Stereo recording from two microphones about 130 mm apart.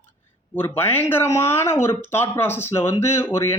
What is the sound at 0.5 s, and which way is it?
A man's voice, 15° left (ahead or behind).